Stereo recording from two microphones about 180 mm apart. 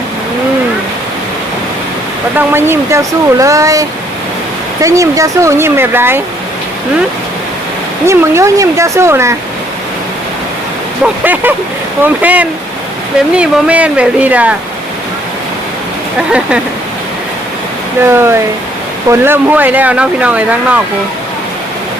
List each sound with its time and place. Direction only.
2.3 s speech: 15° right (ahead or behind)
8.0 s speech: 15° right (ahead or behind)
11.0 s speech: 10° right (ahead or behind)
18.0 s speech: 15° right (ahead or behind)